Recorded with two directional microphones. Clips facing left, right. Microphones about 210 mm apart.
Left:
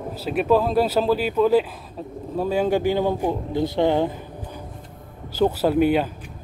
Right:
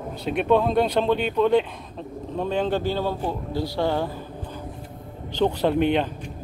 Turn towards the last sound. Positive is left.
turn(degrees=5)  # may be behind; listen again after turning